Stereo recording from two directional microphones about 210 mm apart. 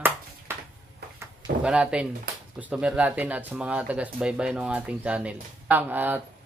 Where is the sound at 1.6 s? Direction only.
5° right (ahead or behind).